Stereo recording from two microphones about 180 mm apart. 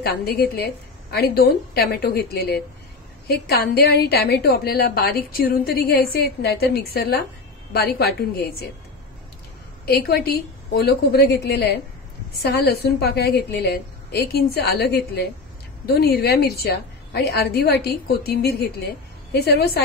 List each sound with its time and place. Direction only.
0.0 s a woman's voice: 60° left (ahead or behind)
9.8 s a woman's voice: 60° left (ahead or behind)